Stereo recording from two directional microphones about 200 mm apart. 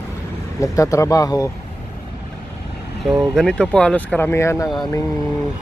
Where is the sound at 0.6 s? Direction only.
15° left (ahead or behind).